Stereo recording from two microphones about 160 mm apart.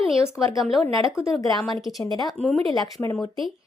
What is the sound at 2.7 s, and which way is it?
Speech, 20° left (ahead or behind).